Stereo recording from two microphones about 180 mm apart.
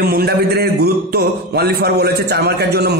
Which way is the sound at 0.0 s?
60° right (ahead or behind).